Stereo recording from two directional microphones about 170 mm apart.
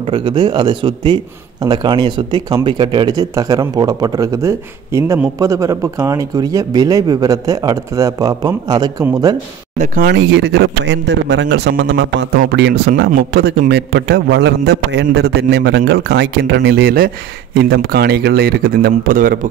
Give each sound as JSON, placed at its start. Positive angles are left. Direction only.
{"t": 0.0, "sound": "a man's voice", "side_deg": -25}
{"t": 10.0, "sound": "a man's voice", "side_deg": -85}
{"t": 12.9, "sound": "speech", "side_deg": -65}
{"t": 13.7, "sound": "a man's voice", "side_deg": -85}